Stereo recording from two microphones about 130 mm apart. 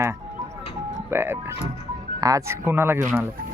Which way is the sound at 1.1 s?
15° right (ahead or behind).